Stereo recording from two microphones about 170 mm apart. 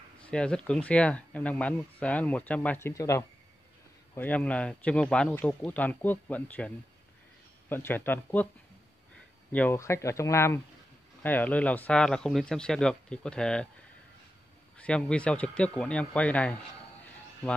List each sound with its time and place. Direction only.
0.2 s speech: 5° left (ahead or behind)
7.7 s speech: 10° left (ahead or behind)
9.5 s speech: 10° left (ahead or behind)
14.8 s speech: 5° left (ahead or behind)